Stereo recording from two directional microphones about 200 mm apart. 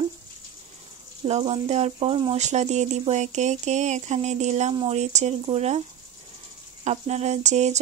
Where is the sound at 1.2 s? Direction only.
30° right (ahead or behind).